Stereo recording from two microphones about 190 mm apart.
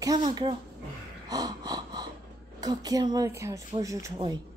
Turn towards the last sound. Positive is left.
turn(degrees=-20)  # may be behind; listen again after turning